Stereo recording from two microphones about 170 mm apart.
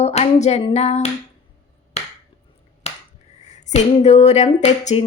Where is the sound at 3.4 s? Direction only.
45° left (ahead or behind).